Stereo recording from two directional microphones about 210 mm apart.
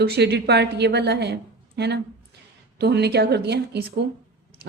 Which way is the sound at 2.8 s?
50° right (ahead or behind).